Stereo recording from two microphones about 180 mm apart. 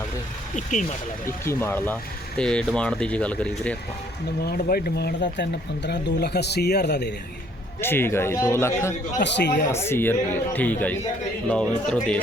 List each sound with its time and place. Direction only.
0.5 s speech: 45° left (ahead or behind)
1.5 s a man's voice: 15° left (ahead or behind)
4.4 s speech: 55° left (ahead or behind)
7.8 s a man's voice: 15° left (ahead or behind)
9.2 s speech: 75° left (ahead or behind)
9.7 s a man's voice: 15° left (ahead or behind)